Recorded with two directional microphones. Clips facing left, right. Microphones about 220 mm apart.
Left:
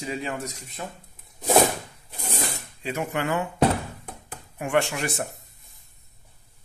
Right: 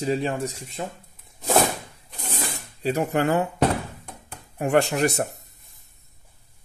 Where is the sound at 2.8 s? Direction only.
35° right (ahead or behind).